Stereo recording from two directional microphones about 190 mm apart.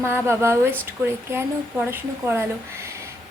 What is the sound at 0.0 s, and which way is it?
Speech, 15° right (ahead or behind).